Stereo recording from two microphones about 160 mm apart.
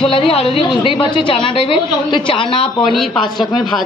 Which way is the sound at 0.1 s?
35° left (ahead or behind).